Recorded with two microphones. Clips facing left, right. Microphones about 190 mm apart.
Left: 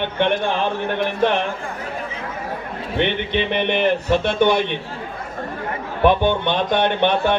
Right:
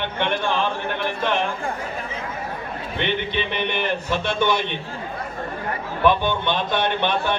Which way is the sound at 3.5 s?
55° left (ahead or behind).